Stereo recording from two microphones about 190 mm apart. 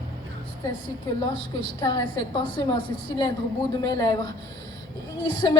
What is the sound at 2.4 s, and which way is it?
A woman's voice, 25° left (ahead or behind).